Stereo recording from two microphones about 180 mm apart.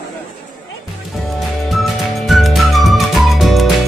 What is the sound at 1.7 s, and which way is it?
Music, centre (ahead or behind).